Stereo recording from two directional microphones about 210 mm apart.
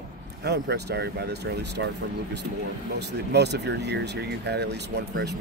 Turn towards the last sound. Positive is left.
turn(degrees=-55)  # may be behind; listen again after turning